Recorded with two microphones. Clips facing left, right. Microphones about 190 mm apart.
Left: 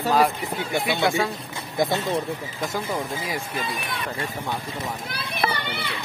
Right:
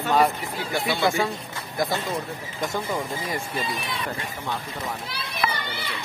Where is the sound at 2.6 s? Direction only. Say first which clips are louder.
Right 2 dB; 5° left (ahead or behind).